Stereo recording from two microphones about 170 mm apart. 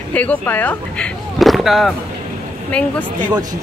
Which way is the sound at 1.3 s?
Centre (ahead or behind).